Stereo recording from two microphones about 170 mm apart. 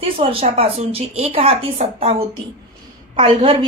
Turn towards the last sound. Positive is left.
turn(degrees=-30)  # may be behind; listen again after turning